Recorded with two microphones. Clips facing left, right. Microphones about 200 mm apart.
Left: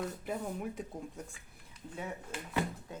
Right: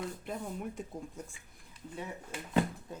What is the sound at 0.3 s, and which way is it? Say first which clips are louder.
Speech: left 1 dB; centre (ahead or behind).